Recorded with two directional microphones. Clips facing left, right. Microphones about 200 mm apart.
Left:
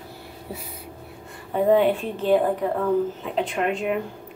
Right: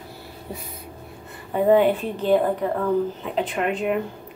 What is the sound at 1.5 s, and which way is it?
A woman's voice, 5° right (ahead or behind).